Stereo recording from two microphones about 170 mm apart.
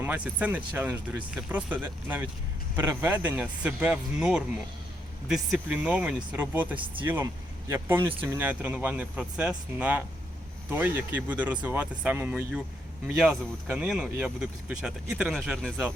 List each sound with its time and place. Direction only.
0.0 s speech: 10° right (ahead or behind)
6.7 s speech: 30° right (ahead or behind)
7.7 s speech: 15° right (ahead or behind)